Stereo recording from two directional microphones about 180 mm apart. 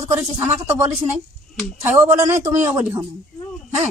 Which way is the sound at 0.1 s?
15° right (ahead or behind).